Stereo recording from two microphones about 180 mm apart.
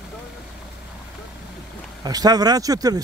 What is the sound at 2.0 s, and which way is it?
Speech, 20° right (ahead or behind).